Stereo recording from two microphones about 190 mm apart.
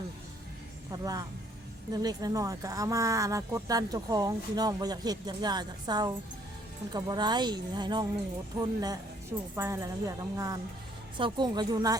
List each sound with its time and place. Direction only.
0.9 s a woman's voice: 20° right (ahead or behind)